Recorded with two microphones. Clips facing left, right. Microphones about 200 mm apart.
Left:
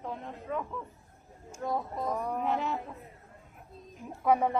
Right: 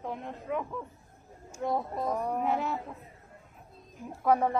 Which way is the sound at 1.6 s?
20° right (ahead or behind).